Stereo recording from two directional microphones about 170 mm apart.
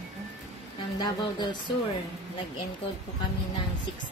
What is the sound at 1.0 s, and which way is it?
Speech, 25° left (ahead or behind).